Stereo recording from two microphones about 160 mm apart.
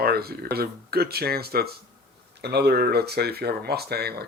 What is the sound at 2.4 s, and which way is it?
Speech, 90° right.